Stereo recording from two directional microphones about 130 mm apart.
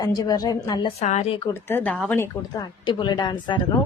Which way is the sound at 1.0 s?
65° left (ahead or behind).